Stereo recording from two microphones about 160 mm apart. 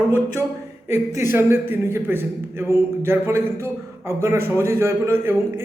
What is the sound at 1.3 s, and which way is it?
A man's voice, 15° right (ahead or behind).